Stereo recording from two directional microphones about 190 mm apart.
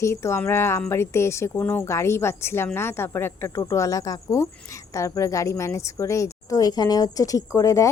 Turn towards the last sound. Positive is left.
turn(degrees=15)  # may be behind; listen again after turning